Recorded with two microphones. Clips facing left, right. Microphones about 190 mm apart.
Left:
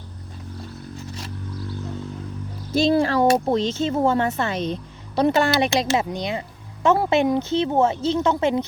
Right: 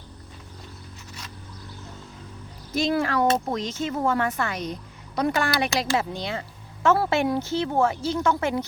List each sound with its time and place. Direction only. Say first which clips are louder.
2.7 s speech: left 5 dB; 30° left (ahead or behind)